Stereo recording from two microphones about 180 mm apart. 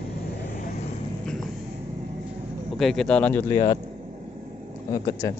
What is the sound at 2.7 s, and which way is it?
Speech, centre (ahead or behind).